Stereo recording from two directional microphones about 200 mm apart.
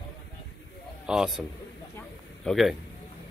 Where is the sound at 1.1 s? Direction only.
5° right (ahead or behind).